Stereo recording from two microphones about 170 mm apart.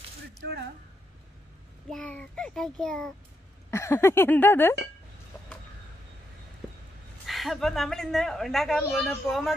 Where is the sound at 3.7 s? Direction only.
15° left (ahead or behind).